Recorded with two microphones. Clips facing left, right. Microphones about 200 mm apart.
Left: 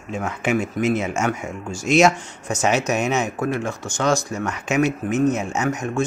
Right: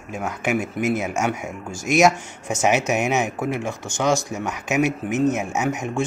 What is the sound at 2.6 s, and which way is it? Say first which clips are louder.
Speech: even; 15° right (ahead or behind).